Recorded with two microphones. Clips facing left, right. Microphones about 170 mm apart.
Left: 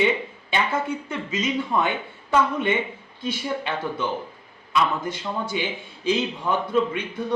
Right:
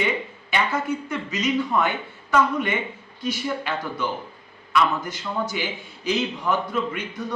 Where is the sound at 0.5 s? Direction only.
30° left (ahead or behind).